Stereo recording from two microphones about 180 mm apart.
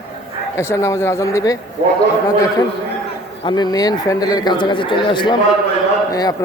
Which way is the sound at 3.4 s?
25° left (ahead or behind).